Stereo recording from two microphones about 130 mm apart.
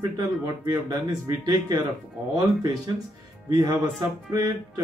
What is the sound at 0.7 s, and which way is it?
Speech, 25° right (ahead or behind).